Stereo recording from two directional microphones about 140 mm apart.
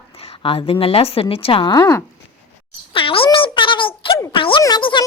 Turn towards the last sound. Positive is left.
turn(degrees=35)  # may be behind; listen again after turning